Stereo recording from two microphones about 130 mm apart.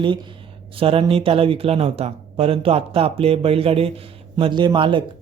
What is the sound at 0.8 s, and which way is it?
Speech, 45° right (ahead or behind).